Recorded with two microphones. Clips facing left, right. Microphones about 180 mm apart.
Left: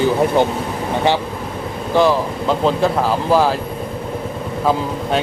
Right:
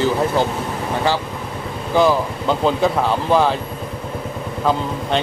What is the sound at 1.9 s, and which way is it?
Speech, centre (ahead or behind).